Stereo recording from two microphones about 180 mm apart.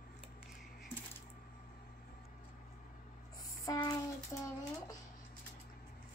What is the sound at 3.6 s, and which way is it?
Music, 20° left (ahead or behind).